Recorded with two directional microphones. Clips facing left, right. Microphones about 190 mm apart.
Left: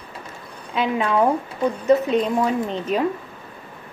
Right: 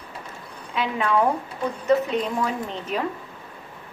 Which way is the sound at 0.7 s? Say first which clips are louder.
Left 4 dB; 20° left (ahead or behind).